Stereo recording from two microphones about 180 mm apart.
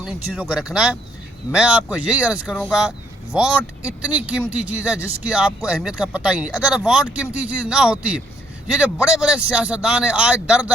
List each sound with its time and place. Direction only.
0.0 s speech: 5° right (ahead or behind)